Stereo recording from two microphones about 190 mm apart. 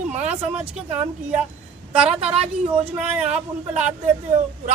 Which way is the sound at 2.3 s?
30° right (ahead or behind).